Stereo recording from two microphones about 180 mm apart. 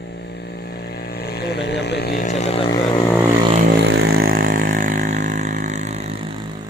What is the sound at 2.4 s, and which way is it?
Vehicle, 35° left (ahead or behind).